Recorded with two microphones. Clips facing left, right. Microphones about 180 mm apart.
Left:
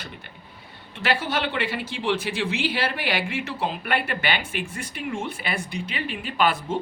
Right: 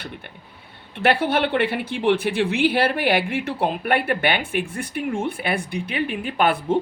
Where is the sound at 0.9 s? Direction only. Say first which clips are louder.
Right 6 dB; 60° right (ahead or behind).